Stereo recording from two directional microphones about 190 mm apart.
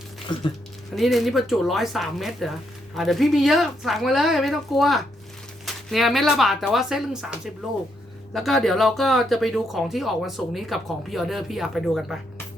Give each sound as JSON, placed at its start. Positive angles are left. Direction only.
{"t": 0.3, "sound": "speech", "side_deg": 25}
{"t": 0.9, "sound": "speech", "side_deg": 0}